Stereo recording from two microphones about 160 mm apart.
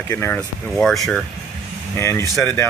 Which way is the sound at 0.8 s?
5° left (ahead or behind).